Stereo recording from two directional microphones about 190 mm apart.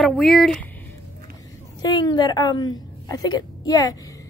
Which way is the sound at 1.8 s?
20° left (ahead or behind).